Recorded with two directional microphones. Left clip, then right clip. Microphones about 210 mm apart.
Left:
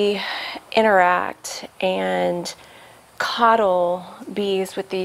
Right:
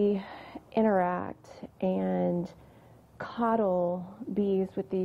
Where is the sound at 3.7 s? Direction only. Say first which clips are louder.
Left 10 dB; 35° left (ahead or behind).